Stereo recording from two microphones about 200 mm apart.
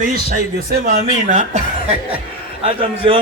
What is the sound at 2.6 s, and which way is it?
Speech, 30° right (ahead or behind).